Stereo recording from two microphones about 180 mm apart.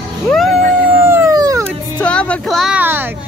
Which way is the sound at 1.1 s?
15° right (ahead or behind).